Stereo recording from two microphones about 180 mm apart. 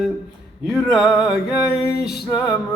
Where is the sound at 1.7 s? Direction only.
60° left (ahead or behind).